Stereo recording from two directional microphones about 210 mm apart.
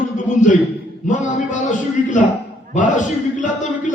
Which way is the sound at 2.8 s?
35° left (ahead or behind).